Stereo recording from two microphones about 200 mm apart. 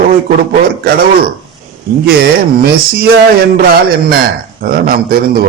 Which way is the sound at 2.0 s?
50° right (ahead or behind).